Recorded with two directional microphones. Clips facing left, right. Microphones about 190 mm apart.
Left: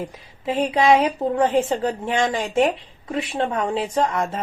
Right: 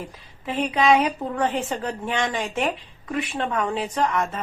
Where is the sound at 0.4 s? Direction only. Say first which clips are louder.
Left 3 dB; 25° left (ahead or behind).